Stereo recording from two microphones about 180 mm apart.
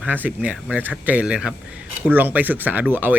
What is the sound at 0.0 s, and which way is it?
Speech, 10° right (ahead or behind).